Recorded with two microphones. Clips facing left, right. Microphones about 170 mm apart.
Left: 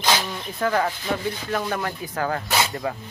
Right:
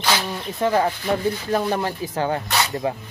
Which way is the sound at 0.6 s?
25° right (ahead or behind).